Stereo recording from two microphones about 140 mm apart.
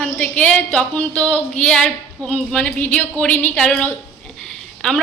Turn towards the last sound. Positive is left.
turn(degrees=5)  # may be behind; listen again after turning